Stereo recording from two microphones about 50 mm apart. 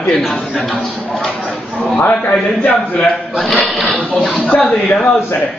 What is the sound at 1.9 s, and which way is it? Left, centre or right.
Speech, left.